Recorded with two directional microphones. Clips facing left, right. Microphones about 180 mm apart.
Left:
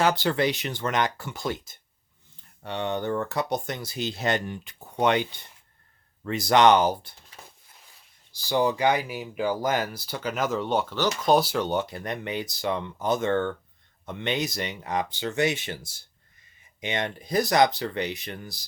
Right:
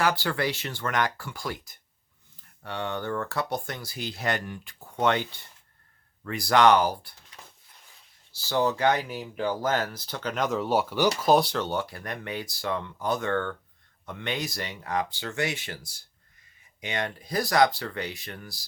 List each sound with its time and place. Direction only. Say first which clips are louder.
0.0 s speech: left 3 dB; 20° left (ahead or behind)
8.3 s speech: left 2 dB; 15° left (ahead or behind); by 11.1 s 10° right (ahead or behind)
11.2 s speech: left 2 dB; centre (ahead or behind)
11.6 s speech: left 3 dB; 20° left (ahead or behind)